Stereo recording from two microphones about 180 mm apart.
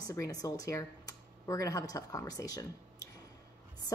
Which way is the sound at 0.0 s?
20° left (ahead or behind).